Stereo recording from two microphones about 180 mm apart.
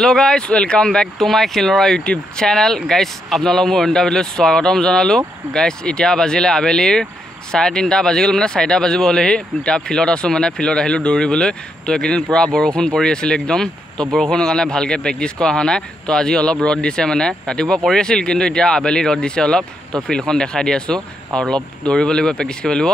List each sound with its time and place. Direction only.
0.0 s speech: 5° left (ahead or behind)